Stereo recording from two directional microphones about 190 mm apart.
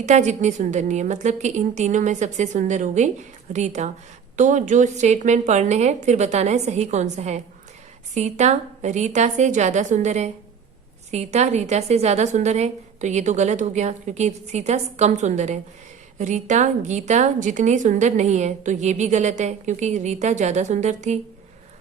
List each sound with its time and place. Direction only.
0.0 s a woman's voice: 40° right (ahead or behind)